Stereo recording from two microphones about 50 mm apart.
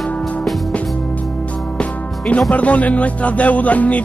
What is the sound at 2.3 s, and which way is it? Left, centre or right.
Speech, left.